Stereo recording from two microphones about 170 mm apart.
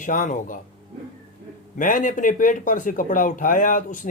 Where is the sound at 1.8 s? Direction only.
50° left (ahead or behind).